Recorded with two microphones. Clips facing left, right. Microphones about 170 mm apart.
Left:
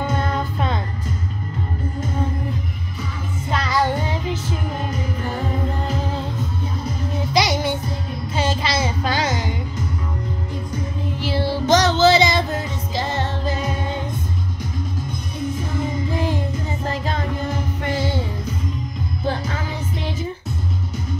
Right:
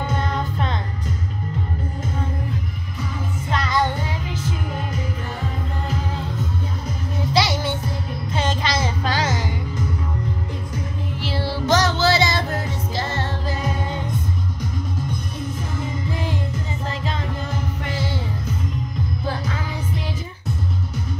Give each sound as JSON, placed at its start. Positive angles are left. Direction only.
{"t": 7.3, "sound": "music", "side_deg": 15}
{"t": 8.4, "sound": "child singing", "side_deg": 10}
{"t": 11.1, "sound": "music", "side_deg": 15}
{"t": 17.0, "sound": "music", "side_deg": 45}